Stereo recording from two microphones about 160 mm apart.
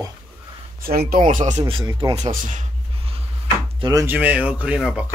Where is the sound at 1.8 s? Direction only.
25° right (ahead or behind).